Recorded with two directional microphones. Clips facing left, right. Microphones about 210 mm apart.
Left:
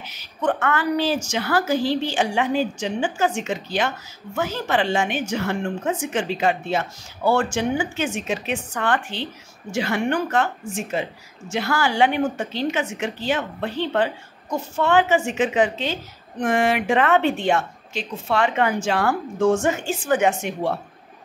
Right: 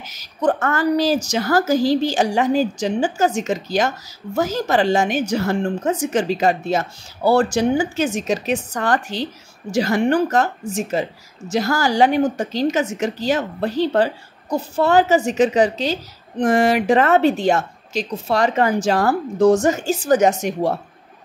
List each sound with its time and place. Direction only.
0.0 s a woman's voice: 40° right (ahead or behind)